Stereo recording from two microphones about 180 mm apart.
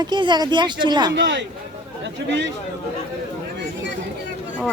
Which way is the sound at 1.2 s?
80° right.